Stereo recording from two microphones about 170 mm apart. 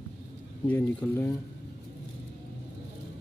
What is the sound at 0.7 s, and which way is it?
Speech, 10° left (ahead or behind).